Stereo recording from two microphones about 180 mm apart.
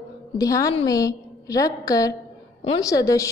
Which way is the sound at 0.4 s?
20° left (ahead or behind).